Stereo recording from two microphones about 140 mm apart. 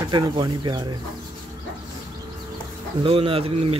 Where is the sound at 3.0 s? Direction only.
40° right (ahead or behind).